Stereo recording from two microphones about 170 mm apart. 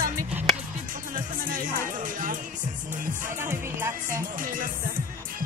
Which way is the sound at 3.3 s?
15° right (ahead or behind).